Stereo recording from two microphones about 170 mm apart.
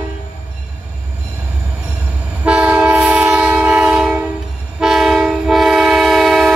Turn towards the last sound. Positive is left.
turn(degrees=0)  # may be behind; listen again after turning